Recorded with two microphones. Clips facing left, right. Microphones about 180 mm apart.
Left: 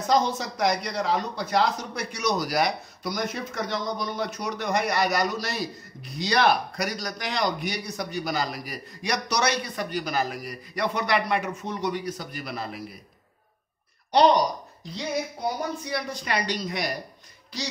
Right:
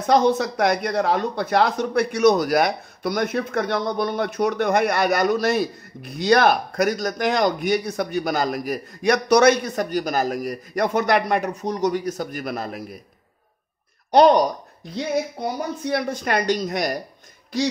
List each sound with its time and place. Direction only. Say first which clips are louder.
0.0 s speech: right 6 dB; 60° right (ahead or behind)
14.1 s speech: right 5 dB; 50° right (ahead or behind)